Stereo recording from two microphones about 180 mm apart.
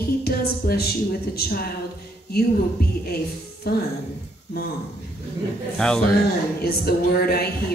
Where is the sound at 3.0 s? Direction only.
60° left (ahead or behind).